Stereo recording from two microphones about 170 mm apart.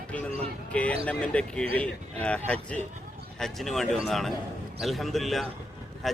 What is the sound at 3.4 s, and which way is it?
Speech, centre (ahead or behind).